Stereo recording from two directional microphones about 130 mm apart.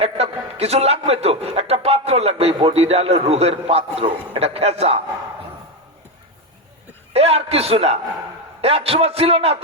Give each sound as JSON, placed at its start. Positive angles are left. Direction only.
{"t": 0.0, "sound": "a man's voice", "side_deg": -50}
{"t": 7.1, "sound": "a man's voice", "side_deg": -55}